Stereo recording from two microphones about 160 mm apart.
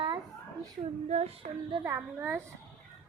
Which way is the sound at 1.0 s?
40° right (ahead or behind).